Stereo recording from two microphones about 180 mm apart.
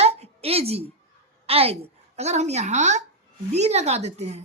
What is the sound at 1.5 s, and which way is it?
A woman's voice, 35° right (ahead or behind).